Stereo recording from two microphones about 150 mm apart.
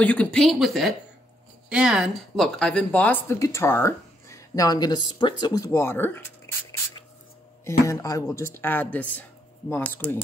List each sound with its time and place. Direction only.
0.0 s speech: 10° left (ahead or behind)
7.6 s speech: 20° left (ahead or behind)